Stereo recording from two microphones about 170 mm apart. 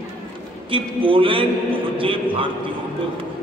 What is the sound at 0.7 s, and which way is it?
A man's voice, 30° right (ahead or behind).